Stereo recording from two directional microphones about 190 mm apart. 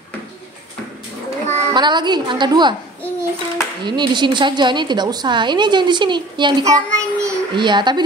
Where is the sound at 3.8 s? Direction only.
25° right (ahead or behind).